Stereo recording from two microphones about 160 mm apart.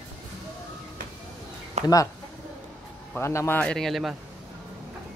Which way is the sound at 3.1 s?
15° left (ahead or behind).